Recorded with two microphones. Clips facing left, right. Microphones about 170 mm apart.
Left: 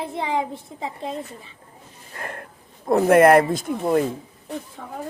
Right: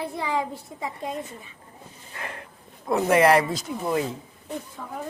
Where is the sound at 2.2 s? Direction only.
50° left (ahead or behind).